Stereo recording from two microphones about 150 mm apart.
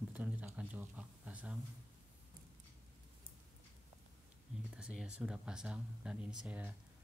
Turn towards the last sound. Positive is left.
turn(degrees=-10)  # may be behind; listen again after turning